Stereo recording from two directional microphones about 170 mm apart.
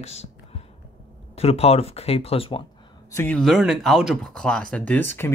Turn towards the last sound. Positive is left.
turn(degrees=10)  # may be behind; listen again after turning